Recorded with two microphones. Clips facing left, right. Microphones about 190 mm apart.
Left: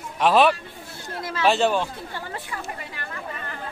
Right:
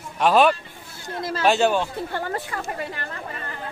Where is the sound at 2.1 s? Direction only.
50° right (ahead or behind).